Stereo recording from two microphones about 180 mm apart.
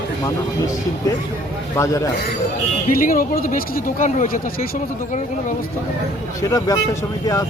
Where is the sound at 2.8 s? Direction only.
50° left (ahead or behind).